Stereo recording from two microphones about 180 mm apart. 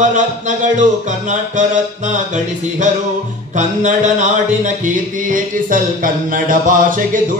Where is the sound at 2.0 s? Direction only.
45° right (ahead or behind).